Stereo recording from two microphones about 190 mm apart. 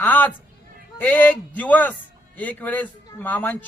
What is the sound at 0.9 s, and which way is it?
A man's voice, 10° left (ahead or behind).